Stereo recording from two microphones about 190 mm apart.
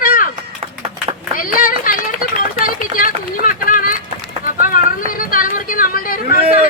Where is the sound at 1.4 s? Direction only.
45° left (ahead or behind).